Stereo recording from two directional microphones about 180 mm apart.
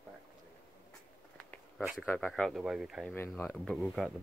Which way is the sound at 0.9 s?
5° left (ahead or behind).